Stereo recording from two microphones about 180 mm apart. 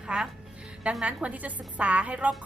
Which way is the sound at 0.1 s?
5° right (ahead or behind).